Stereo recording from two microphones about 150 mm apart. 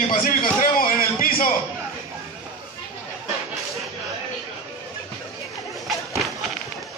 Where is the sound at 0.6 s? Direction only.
70° left (ahead or behind).